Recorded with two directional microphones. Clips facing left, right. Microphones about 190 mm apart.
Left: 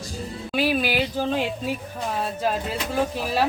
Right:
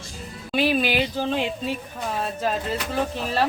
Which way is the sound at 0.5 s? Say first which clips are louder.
Right 1 dB; 5° left (ahead or behind).